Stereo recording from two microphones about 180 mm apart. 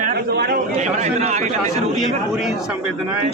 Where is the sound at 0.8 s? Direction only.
40° right (ahead or behind).